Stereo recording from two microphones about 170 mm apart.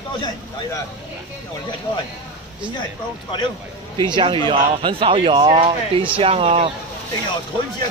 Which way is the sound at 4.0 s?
25° right (ahead or behind).